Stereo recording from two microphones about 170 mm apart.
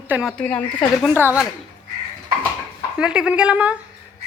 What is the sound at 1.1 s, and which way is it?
Speech, 10° right (ahead or behind).